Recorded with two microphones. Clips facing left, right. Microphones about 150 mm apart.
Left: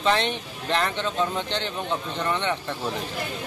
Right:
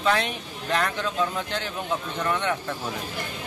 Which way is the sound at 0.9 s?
25° left (ahead or behind).